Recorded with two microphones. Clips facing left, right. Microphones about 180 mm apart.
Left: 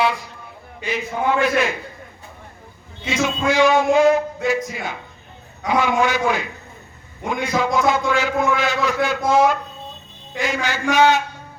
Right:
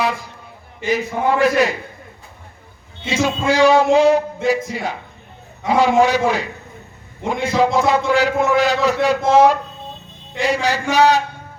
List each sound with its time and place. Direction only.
0.9 s a man's voice: 40° right (ahead or behind)
3.1 s a man's voice: 35° right (ahead or behind)